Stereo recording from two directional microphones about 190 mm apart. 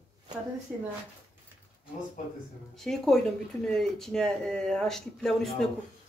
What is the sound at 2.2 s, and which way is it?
Speech, 45° left (ahead or behind).